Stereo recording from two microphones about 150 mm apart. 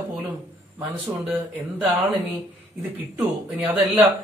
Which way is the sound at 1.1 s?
30° right (ahead or behind).